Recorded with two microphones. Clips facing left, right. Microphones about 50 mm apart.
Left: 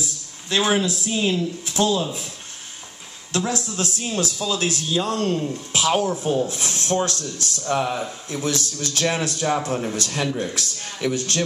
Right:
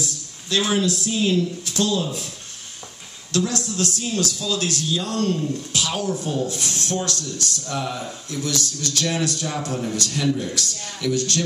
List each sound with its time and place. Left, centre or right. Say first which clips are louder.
0.5 s a man's voice: left 1 dB; left
3.3 s a man's voice: right 1 dB; left